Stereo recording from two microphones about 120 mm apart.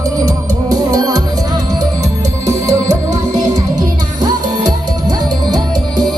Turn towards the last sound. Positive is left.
turn(degrees=-35)  # may be behind; listen again after turning